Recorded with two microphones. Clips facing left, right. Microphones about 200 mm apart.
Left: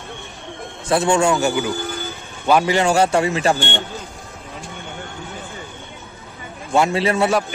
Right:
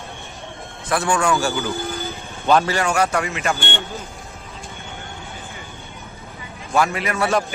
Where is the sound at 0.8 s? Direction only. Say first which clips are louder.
Left 4 dB; 25° left (ahead or behind).